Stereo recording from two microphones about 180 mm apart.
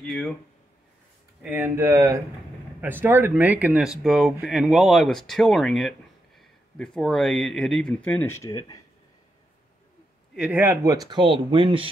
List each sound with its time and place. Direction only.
0.0 s speech: centre (ahead or behind)
1.4 s speech: 10° right (ahead or behind); by 8.8 s 20° left (ahead or behind)
10.3 s speech: 5° right (ahead or behind); by 11.9 s 30° right (ahead or behind)